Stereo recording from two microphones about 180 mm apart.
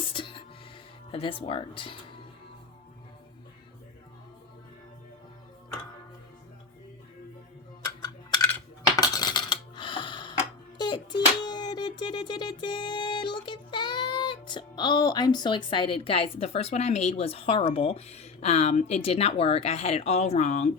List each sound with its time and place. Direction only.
0.1 s music: 30° left (ahead or behind)
1.1 s speech: 30° left (ahead or behind)
8.0 s a sound: 25° left (ahead or behind)
9.0 s dishes: 20° left (ahead or behind); by 20.7 s 40° left (ahead or behind)